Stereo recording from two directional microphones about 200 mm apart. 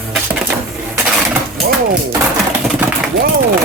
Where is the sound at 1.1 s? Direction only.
Centre (ahead or behind).